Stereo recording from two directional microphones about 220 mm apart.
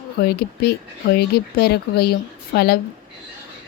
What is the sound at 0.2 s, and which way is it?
Speech, 45° left (ahead or behind).